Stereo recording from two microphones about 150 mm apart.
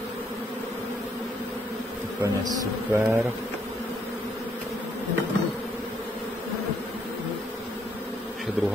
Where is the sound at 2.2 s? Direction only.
20° right (ahead or behind).